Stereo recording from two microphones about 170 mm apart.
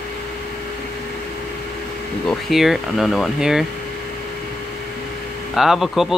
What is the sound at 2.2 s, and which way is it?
Speech, centre (ahead or behind).